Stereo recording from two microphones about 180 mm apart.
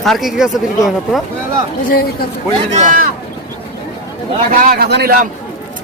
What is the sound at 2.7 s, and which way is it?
Speech, 45° right (ahead or behind).